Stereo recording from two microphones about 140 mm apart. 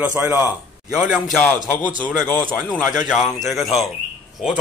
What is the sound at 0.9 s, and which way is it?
Speech, 5° right (ahead or behind).